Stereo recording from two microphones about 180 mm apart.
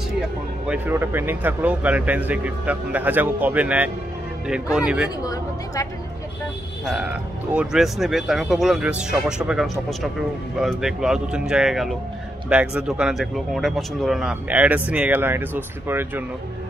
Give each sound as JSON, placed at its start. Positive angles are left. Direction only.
{"t": 0.7, "sound": "speech", "side_deg": -10}
{"t": 5.2, "sound": "speech", "side_deg": 20}
{"t": 7.5, "sound": "speech", "side_deg": -5}